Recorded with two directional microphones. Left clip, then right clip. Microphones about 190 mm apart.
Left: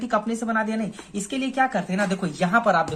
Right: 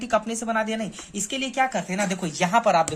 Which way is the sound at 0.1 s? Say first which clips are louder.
Right 1 dB; 30° right (ahead or behind).